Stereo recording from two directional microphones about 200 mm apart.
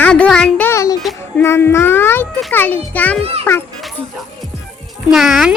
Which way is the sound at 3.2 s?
30° right (ahead or behind).